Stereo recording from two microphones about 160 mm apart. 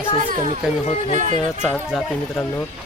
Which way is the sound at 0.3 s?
50° right (ahead or behind).